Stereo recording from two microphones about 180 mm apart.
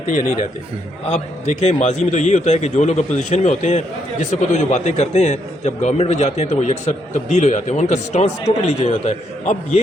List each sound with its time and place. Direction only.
1.1 s a man's voice: 40° left (ahead or behind)